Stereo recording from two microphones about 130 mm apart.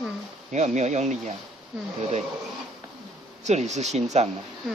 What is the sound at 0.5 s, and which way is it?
Speech, 65° right (ahead or behind).